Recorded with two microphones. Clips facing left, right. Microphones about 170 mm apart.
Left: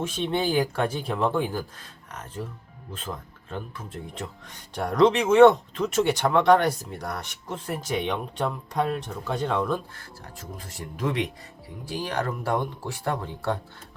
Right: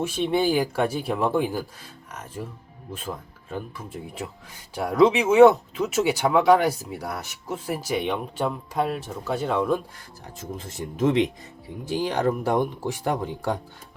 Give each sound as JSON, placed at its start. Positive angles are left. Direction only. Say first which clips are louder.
{"t": 0.0, "sound": "speech", "louder": "right 3 dB", "side_deg": -5}
{"t": 3.5, "sound": "speech", "louder": "right 2 dB", "side_deg": -10}
{"t": 10.3, "sound": "speech", "louder": "right 7 dB", "side_deg": -20}